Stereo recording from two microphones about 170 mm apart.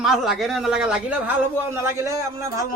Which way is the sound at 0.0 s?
Centre (ahead or behind).